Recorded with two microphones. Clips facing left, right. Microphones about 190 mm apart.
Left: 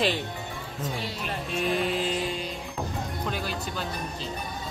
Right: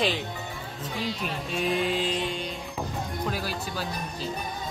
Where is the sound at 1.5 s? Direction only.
Centre (ahead or behind).